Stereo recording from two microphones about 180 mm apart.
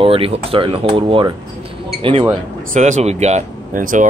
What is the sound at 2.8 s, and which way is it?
Speech, 40° right (ahead or behind).